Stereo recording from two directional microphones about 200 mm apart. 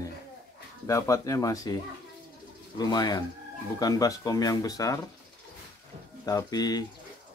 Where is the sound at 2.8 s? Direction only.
20° left (ahead or behind).